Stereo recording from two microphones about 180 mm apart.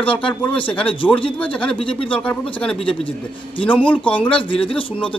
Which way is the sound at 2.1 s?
5° left (ahead or behind).